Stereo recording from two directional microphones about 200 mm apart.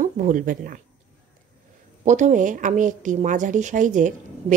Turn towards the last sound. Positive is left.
turn(degrees=-40)  # may be behind; listen again after turning